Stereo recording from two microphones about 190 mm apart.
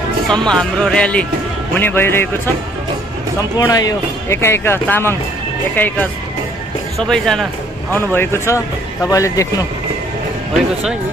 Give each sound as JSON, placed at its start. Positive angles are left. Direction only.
{"t": 0.3, "sound": "speech", "side_deg": 5}
{"t": 3.5, "sound": "speech", "side_deg": 20}